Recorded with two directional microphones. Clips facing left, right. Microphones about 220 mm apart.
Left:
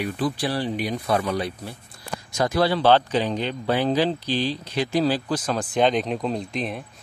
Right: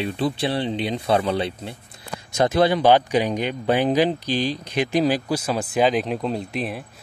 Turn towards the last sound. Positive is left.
turn(degrees=-5)  # may be behind; listen again after turning